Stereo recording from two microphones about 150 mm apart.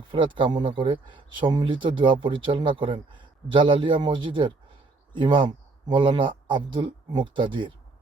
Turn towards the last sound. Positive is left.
turn(degrees=-35)  # may be behind; listen again after turning